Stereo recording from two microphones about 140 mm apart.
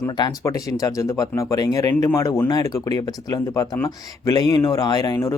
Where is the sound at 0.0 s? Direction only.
25° left (ahead or behind).